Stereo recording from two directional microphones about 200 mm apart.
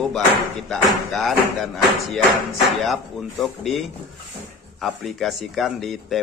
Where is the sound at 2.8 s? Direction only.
Centre (ahead or behind).